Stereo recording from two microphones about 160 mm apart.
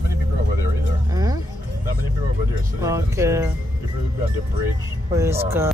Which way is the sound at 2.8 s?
20° right (ahead or behind).